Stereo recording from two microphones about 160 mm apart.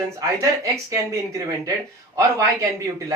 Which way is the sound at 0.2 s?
20° right (ahead or behind).